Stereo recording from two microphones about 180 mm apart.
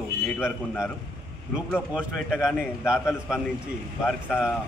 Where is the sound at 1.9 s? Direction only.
5° right (ahead or behind).